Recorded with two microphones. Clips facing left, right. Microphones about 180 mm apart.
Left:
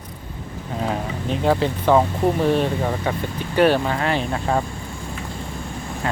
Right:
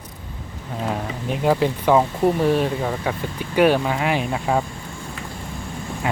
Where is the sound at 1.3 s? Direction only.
10° right (ahead or behind).